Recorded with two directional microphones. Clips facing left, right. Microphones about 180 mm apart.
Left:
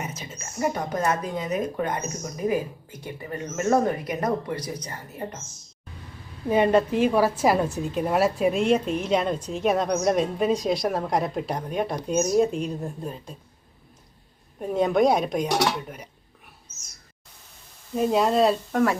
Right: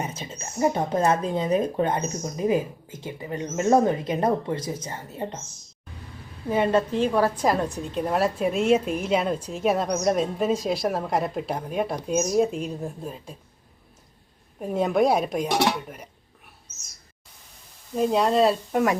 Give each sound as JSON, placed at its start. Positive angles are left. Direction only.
{"t": 0.0, "sound": "speech", "side_deg": -30}
{"t": 6.5, "sound": "a woman's voice", "side_deg": 15}
{"t": 14.6, "sound": "a woman's voice", "side_deg": -5}
{"t": 17.9, "sound": "a woman's voice", "side_deg": 0}